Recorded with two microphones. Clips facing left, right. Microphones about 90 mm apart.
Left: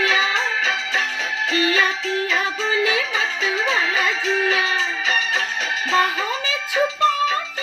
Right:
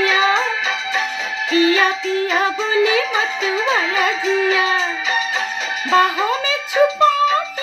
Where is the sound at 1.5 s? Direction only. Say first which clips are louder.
Right 6 dB; 15° right (ahead or behind).